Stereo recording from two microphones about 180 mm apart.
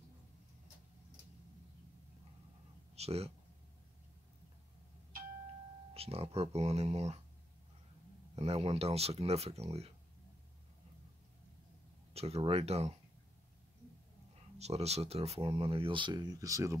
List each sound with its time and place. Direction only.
3.0 s speech: 35° right (ahead or behind)
5.9 s speech: 35° right (ahead or behind)
8.4 s speech: 35° right (ahead or behind)
12.1 s speech: 35° right (ahead or behind)
14.6 s speech: 35° right (ahead or behind); by 16.7 s 20° right (ahead or behind)